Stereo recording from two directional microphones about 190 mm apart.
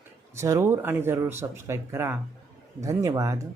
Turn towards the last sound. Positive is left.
turn(degrees=-15)  # may be behind; listen again after turning